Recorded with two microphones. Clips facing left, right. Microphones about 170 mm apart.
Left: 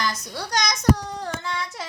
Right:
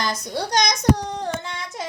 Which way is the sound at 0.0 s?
20° right (ahead or behind).